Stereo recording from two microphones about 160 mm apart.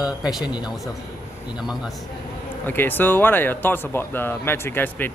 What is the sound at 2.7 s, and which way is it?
Speech, 10° left (ahead or behind).